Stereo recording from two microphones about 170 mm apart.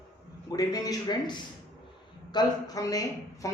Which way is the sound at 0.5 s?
20° left (ahead or behind).